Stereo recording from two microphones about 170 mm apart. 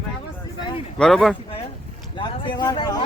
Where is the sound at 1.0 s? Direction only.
5° left (ahead or behind).